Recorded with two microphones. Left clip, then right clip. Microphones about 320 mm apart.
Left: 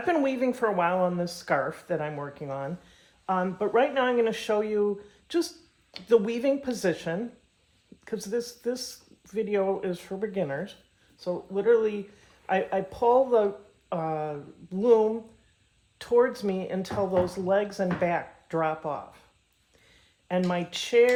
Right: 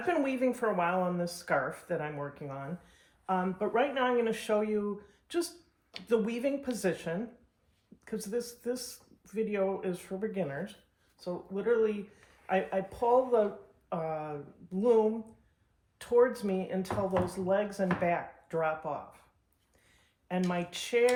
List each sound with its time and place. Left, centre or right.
0.1 s speech: left
20.2 s speech: left